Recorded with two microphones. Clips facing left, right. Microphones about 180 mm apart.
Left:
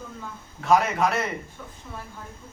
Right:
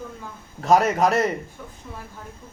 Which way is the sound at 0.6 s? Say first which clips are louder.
Right 3 dB; 40° right (ahead or behind).